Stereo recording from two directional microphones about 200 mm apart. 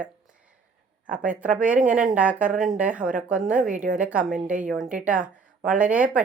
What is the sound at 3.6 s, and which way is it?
Speech, 40° right (ahead or behind).